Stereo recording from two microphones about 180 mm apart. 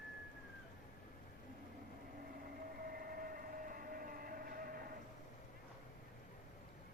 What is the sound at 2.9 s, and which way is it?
Train, 55° right (ahead or behind).